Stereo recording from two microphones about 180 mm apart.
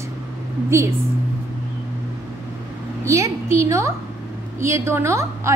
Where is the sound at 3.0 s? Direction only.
15° right (ahead or behind).